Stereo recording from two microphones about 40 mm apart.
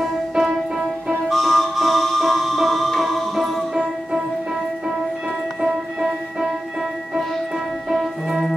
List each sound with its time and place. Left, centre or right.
0.0 s music: centre
5.6 s music: centre
7.9 s music: centre